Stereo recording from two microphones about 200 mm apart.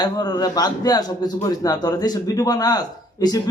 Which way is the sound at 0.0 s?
20° left (ahead or behind).